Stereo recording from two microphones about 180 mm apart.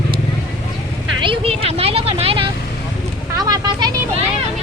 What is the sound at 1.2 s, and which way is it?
Vehicle, 30° right (ahead or behind).